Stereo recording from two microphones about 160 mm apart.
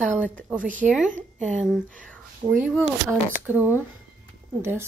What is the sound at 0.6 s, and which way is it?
Speech, 55° right (ahead or behind).